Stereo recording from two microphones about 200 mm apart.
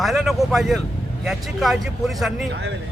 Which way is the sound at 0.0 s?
Centre (ahead or behind).